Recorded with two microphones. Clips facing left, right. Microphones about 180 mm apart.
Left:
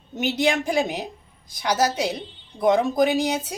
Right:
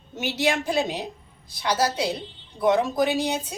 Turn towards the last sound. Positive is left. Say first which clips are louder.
# left 3 dB
turn(degrees=15)  # may be behind; listen again after turning